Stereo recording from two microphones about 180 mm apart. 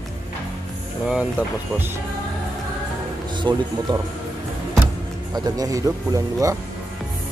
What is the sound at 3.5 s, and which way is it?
Speech, 25° right (ahead or behind).